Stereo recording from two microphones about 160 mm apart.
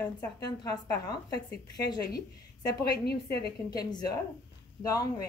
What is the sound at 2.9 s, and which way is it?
Speech, 80° left.